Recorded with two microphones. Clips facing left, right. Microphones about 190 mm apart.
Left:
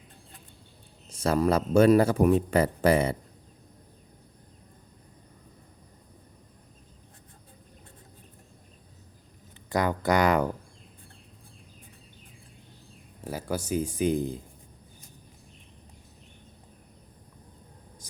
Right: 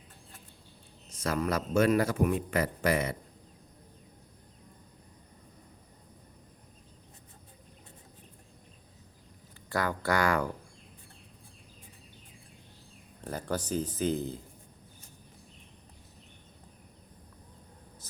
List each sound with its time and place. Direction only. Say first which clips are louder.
1.1 s speech: left 6 dB; 30° left (ahead or behind)
9.6 s speech: left 5 dB; 20° left (ahead or behind)
13.2 s speech: left 2 dB; 10° left (ahead or behind)